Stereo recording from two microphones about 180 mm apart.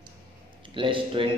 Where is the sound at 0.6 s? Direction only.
30° right (ahead or behind).